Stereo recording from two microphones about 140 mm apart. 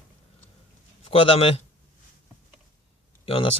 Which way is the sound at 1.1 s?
40° left (ahead or behind).